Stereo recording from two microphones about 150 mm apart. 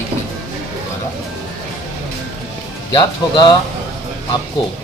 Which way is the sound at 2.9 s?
25° left (ahead or behind).